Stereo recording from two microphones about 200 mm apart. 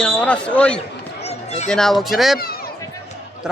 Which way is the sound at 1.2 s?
35° left (ahead or behind).